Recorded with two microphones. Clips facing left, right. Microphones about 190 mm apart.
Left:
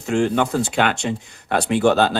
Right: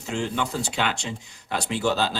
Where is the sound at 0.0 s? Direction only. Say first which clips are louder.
Left 9 dB; 55° left (ahead or behind).